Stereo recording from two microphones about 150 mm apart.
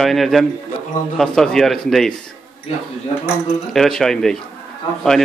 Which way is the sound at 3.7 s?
Centre (ahead or behind).